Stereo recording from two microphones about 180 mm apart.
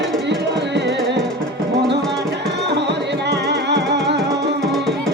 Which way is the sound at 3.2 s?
75° right (ahead or behind).